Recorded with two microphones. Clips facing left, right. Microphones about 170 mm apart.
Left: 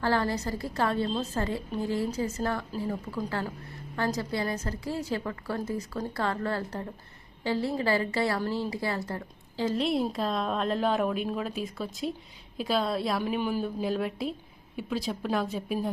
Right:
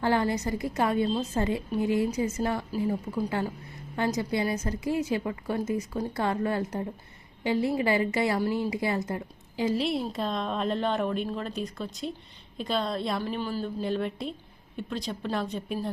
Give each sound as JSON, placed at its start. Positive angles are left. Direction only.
{"t": 0.0, "sound": "a woman's voice", "side_deg": -15}
{"t": 9.7, "sound": "a woman's voice", "side_deg": 0}
{"t": 13.2, "sound": "a man's voice", "side_deg": 15}
{"t": 13.8, "sound": "a woman's voice", "side_deg": 0}